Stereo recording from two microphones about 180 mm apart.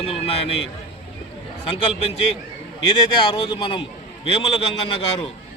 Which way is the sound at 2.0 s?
35° left (ahead or behind).